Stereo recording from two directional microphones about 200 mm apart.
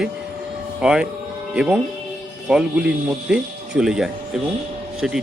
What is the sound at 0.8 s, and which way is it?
Speech, 5° right (ahead or behind).